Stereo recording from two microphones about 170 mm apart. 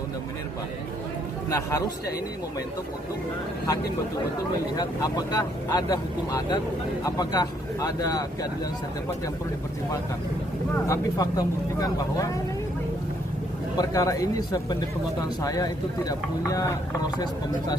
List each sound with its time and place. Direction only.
1.5 s speech: 20° left (ahead or behind)
4.8 s speech: 20° left (ahead or behind)
10.8 s speech: 20° left (ahead or behind)
13.7 s speech: 20° left (ahead or behind)